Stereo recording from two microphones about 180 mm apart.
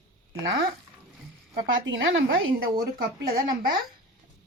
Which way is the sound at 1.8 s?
90° right.